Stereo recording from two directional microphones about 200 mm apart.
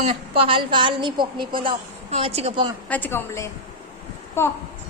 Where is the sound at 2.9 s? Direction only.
10° left (ahead or behind).